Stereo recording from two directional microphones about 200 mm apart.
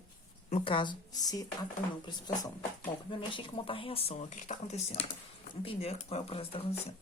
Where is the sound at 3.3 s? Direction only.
25° left (ahead or behind).